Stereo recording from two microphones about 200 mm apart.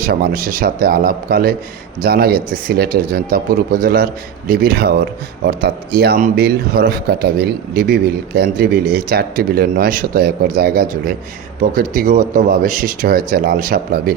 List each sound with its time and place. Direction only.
0.1 s speech: 45° right (ahead or behind)